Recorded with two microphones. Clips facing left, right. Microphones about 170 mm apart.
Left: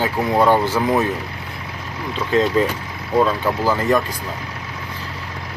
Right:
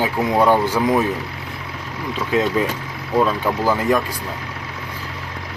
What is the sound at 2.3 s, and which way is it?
Speech, 10° right (ahead or behind).